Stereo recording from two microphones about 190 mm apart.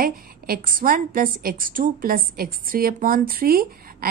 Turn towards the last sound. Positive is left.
turn(degrees=-50)  # may be behind; listen again after turning